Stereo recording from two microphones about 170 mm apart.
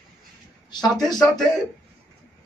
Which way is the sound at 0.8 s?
Centre (ahead or behind).